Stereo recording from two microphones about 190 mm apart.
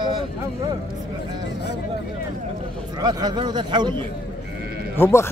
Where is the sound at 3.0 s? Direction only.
20° right (ahead or behind).